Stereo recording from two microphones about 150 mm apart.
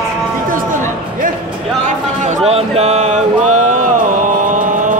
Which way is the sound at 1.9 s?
50° right (ahead or behind).